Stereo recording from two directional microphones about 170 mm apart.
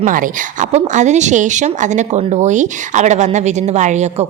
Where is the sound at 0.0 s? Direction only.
50° right (ahead or behind).